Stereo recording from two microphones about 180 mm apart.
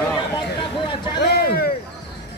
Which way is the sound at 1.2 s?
60° left (ahead or behind).